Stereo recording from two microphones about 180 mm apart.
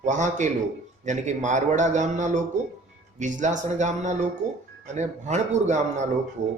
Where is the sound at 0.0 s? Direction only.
40° right (ahead or behind).